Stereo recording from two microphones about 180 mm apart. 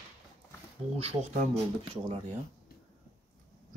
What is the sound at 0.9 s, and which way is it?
Speech, 35° right (ahead or behind).